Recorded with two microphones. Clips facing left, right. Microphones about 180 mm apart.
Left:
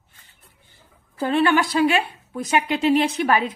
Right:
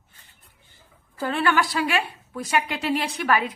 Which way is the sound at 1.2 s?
20° left (ahead or behind).